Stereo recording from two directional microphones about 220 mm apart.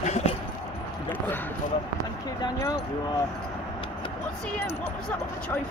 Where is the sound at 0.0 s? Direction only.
30° left (ahead or behind).